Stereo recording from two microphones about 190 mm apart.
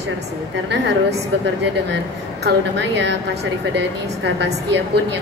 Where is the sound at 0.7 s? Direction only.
65° right (ahead or behind).